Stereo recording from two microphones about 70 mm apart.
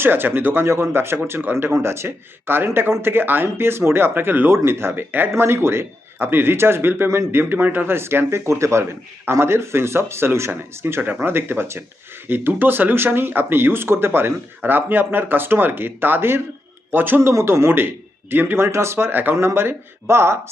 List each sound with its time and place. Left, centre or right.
0.0 s a man's voice: right